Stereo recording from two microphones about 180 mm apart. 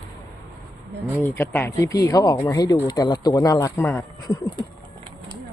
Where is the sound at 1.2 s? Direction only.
15° left (ahead or behind).